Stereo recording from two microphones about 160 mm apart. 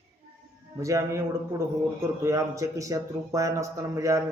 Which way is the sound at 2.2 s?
20° right (ahead or behind).